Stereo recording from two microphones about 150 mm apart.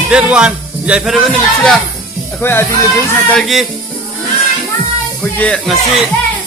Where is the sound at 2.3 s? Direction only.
15° left (ahead or behind).